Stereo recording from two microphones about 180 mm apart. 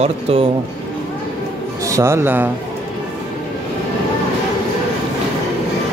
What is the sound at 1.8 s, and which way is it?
Speech, 15° right (ahead or behind).